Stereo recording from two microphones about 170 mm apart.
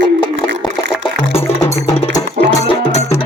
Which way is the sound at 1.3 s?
35° left (ahead or behind).